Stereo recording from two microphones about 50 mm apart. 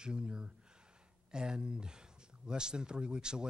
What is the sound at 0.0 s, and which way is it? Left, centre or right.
A man's voice, centre.